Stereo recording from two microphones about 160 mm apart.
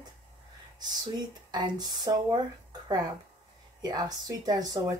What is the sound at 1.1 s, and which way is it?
Speech, 25° right (ahead or behind).